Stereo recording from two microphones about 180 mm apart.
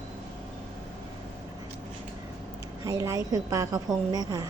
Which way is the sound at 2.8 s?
15° right (ahead or behind).